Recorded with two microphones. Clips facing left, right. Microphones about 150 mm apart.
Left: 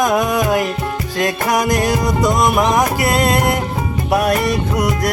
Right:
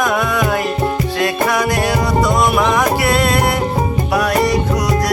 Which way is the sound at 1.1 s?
40° left (ahead or behind).